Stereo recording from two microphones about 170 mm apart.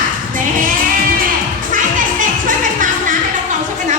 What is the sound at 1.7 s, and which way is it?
Music, 50° right (ahead or behind).